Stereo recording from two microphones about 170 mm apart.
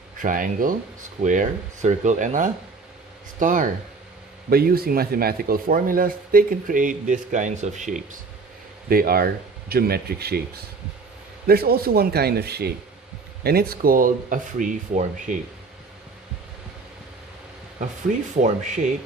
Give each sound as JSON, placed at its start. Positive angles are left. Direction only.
{"t": 0.2, "sound": "speech", "side_deg": -55}
{"t": 4.4, "sound": "a man's voice", "side_deg": -60}
{"t": 8.9, "sound": "a man's voice", "side_deg": -60}
{"t": 11.4, "sound": "a man's voice", "side_deg": -65}
{"t": 18.1, "sound": "speech", "side_deg": -50}